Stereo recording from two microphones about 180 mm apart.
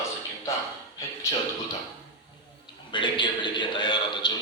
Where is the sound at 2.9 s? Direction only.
25° left (ahead or behind).